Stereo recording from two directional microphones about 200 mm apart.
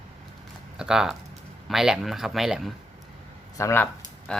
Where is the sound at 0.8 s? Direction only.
5° right (ahead or behind).